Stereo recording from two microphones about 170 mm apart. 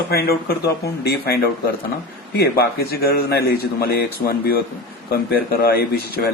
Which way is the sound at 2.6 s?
60° left (ahead or behind).